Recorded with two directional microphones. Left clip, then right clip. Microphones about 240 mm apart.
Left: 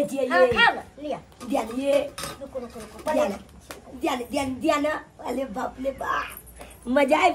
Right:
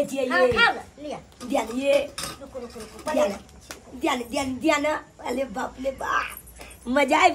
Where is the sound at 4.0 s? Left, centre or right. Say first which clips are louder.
Right 1 dB; centre.